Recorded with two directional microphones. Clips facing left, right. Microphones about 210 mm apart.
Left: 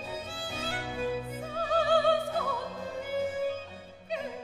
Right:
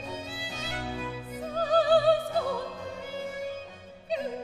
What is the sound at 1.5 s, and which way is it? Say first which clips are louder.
Music: right 4 dB; 35° right (ahead or behind).